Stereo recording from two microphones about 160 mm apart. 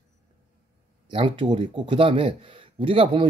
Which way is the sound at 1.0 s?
30° right (ahead or behind).